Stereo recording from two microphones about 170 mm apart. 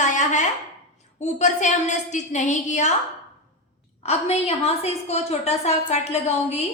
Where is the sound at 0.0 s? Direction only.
45° left (ahead or behind).